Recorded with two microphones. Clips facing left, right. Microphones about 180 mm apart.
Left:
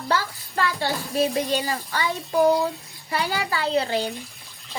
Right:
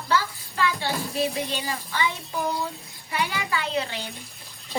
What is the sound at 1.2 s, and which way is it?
A child's voice, 40° left (ahead or behind).